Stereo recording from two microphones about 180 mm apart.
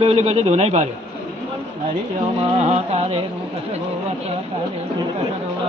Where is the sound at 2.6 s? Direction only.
35° right (ahead or behind).